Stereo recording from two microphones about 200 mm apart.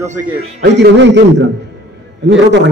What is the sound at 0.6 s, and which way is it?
A man's voice, 60° right (ahead or behind).